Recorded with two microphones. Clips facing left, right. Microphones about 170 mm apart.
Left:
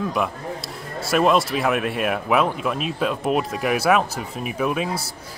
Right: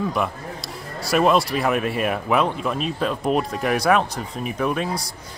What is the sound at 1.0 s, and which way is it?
Speech, centre (ahead or behind).